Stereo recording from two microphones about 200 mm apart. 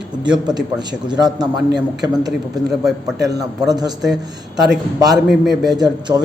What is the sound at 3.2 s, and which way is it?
Speech, 20° right (ahead or behind).